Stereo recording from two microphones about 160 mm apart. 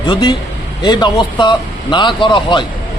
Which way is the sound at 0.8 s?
30° left (ahead or behind).